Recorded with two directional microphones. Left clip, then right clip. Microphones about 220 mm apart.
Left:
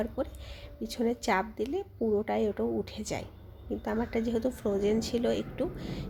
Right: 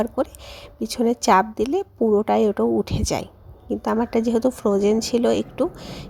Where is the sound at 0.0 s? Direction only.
35° right (ahead or behind).